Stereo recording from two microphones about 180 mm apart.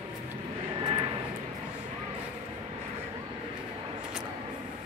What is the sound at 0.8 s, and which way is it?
Vehicle, 25° right (ahead or behind).